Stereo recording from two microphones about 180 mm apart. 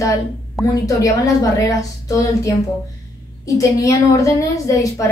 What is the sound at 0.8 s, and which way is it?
Speech, 20° left (ahead or behind).